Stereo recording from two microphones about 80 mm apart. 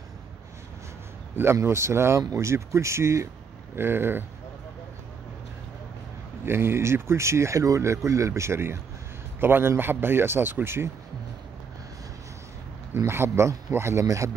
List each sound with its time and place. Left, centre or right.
1.3 s speech: right
6.4 s speech: right
12.9 s speech: right